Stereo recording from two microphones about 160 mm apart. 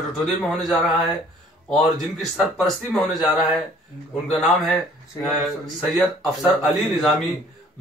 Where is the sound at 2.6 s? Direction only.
Centre (ahead or behind).